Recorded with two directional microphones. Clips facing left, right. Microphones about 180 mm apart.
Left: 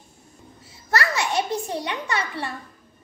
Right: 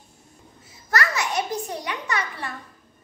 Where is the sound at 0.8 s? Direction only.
25° left (ahead or behind).